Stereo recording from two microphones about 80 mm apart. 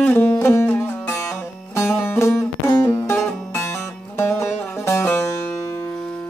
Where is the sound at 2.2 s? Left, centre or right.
Left.